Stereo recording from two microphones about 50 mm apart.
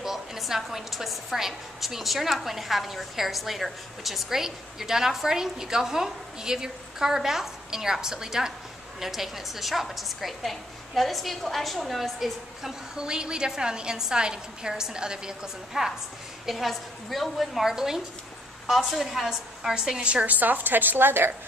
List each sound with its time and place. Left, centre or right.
0.0 s a woman's voice: centre; by 20.3 s right
20.3 s a woman's voice: right